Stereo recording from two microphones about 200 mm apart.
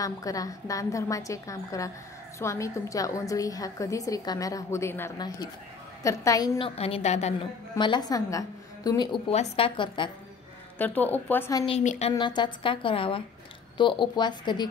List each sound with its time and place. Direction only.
0.0 s a woman's voice: 15° left (ahead or behind)
6.8 s a woman's voice: 30° left (ahead or behind)
7.7 s a woman's voice: 20° left (ahead or behind)
9.3 s a woman's voice: 30° left (ahead or behind)
10.8 s a woman's voice: 10° left (ahead or behind)
11.6 s a woman's voice: 35° left (ahead or behind)
12.2 s a woman's voice: 20° left (ahead or behind)